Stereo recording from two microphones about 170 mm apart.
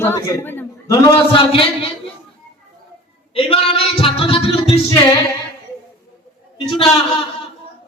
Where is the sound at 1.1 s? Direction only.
30° left (ahead or behind).